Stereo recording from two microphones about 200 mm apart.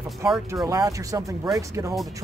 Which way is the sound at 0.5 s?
15° right (ahead or behind).